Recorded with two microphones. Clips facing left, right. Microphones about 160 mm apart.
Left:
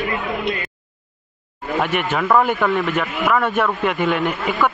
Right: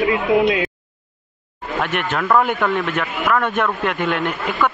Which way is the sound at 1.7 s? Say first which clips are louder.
Left 1 dB; 5° left (ahead or behind).